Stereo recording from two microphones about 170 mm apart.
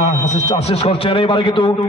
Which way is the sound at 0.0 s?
45° left (ahead or behind).